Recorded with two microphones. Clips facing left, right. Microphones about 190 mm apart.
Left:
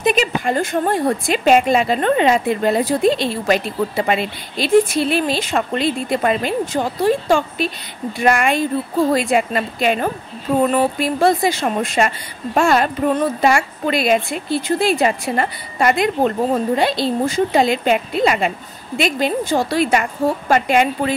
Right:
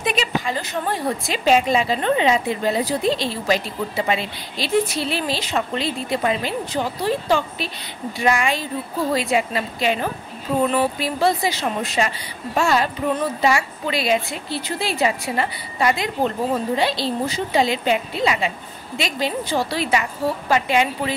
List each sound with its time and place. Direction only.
0.0 s a woman's voice: 50° left (ahead or behind)